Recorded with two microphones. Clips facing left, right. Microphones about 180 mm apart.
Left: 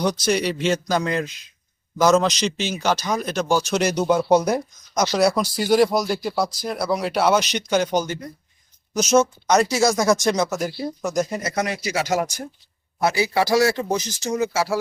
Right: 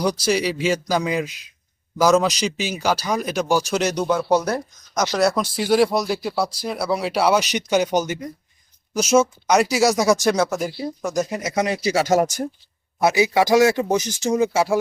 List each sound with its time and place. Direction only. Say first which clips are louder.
0.0 s a man's voice: right 1 dB; 5° right (ahead or behind); by 4.6 s 15° left (ahead or behind)
5.1 s a man's voice: even; centre (ahead or behind)
11.4 s speech: right 3 dB; 20° right (ahead or behind)
11.8 s speech: right 5 dB; 35° right (ahead or behind)
13.0 s a man's voice: right 3 dB; 15° right (ahead or behind)